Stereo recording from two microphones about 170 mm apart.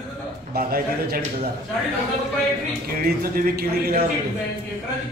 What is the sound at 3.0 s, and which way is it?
Speech, 60° right (ahead or behind).